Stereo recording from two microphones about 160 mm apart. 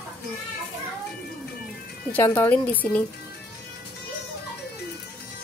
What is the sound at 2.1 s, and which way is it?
Speech, 15° left (ahead or behind).